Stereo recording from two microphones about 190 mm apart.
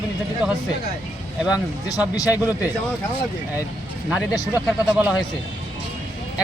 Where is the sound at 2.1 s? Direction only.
20° left (ahead or behind).